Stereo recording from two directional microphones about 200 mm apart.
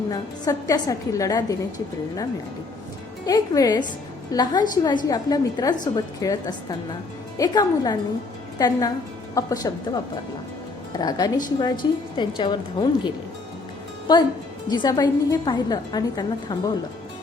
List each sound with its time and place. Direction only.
0.1 s a woman's voice: 15° left (ahead or behind)
3.2 s a woman's voice: 20° left (ahead or behind)
14.7 s a woman's voice: 20° left (ahead or behind)